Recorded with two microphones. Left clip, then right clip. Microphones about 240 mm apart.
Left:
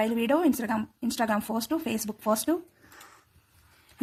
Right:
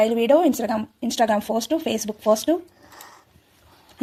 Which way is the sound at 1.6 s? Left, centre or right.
Left.